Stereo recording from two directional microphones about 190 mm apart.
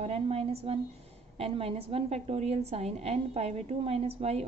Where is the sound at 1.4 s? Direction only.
30° right (ahead or behind).